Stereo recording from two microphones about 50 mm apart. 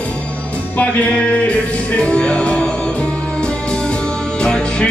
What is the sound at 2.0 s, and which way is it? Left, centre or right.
Music, centre.